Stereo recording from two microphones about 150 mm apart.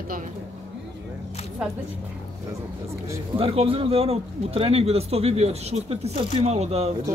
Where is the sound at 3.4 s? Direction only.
40° right (ahead or behind).